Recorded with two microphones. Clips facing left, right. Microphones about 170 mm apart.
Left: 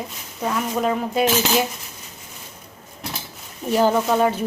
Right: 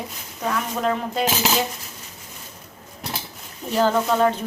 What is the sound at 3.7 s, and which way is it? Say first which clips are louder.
Speech: left 2 dB; 15° left (ahead or behind).